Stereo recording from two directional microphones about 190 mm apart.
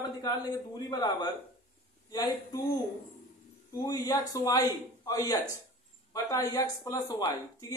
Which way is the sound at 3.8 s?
20° left (ahead or behind).